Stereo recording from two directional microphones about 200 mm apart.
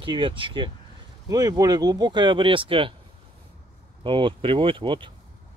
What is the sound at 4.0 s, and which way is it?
Speech, 25° right (ahead or behind).